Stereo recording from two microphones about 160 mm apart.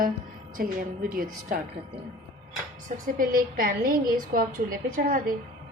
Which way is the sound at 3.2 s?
65° right (ahead or behind).